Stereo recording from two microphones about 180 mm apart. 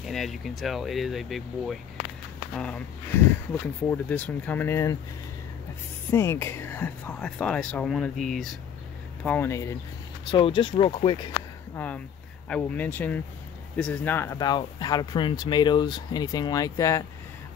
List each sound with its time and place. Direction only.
0.0 s speech: centre (ahead or behind)
6.0 s speech: 15° left (ahead or behind)
10.3 s speech: 30° left (ahead or behind)
11.7 s speech: 10° left (ahead or behind)